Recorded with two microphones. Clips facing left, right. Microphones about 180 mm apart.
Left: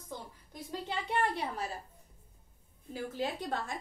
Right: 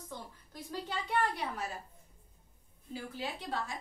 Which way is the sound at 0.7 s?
25° left (ahead or behind).